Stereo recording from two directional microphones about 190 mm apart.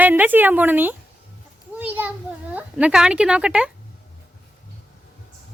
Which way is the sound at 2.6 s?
5° right (ahead or behind).